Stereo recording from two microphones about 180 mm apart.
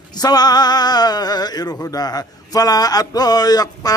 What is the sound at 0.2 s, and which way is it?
Speech, 20° left (ahead or behind).